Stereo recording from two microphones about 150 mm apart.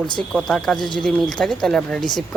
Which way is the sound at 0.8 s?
30° left (ahead or behind).